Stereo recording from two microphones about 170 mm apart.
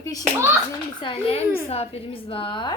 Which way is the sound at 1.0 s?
35° left (ahead or behind).